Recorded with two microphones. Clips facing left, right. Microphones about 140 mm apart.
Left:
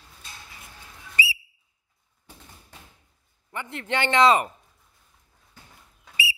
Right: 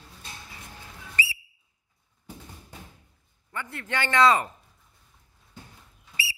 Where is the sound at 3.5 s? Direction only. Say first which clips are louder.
Left 4 dB; 20° left (ahead or behind).